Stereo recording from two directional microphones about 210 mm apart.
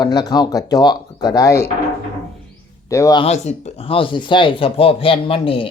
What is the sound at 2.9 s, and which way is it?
Speech, 15° left (ahead or behind).